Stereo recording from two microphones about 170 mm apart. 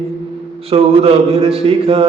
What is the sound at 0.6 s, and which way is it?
Mantra, 35° right (ahead or behind).